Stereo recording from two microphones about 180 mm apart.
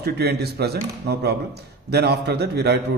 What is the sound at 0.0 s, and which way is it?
A man's voice, 65° right (ahead or behind).